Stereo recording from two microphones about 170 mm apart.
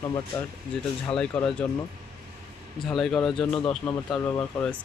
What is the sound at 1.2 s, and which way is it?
Speech, 5° left (ahead or behind).